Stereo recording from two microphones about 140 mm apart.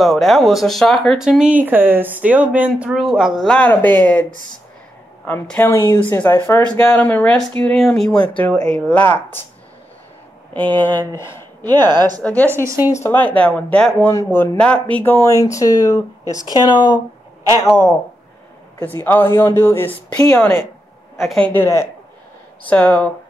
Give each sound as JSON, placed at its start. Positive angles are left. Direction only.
{"t": 0.0, "sound": "speech", "side_deg": 0}
{"t": 3.4, "sound": "speech", "side_deg": 10}
{"t": 10.9, "sound": "speech", "side_deg": -30}
{"t": 12.2, "sound": "speech", "side_deg": 10}
{"t": 12.6, "sound": "a woman's voice", "side_deg": -20}
{"t": 12.9, "sound": "speech", "side_deg": 15}
{"t": 14.1, "sound": "speech", "side_deg": 20}
{"t": 15.2, "sound": "speech", "side_deg": 20}
{"t": 17.6, "sound": "speech", "side_deg": 20}
{"t": 19.0, "sound": "speech", "side_deg": 15}
{"t": 21.5, "sound": "speech", "side_deg": 20}